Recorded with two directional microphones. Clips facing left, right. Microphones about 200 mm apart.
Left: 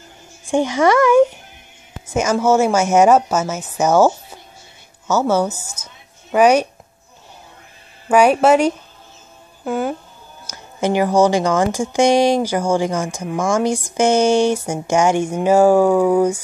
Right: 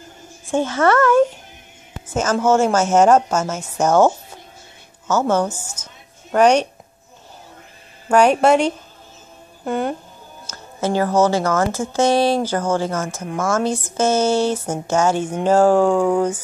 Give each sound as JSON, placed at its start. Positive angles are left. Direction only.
{"t": 0.5, "sound": "speech", "side_deg": 15}
{"t": 8.1, "sound": "speech", "side_deg": 5}
{"t": 10.4, "sound": "speech", "side_deg": 15}